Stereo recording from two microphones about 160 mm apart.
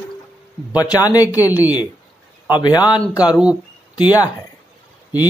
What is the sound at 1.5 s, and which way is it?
Speech, 10° right (ahead or behind).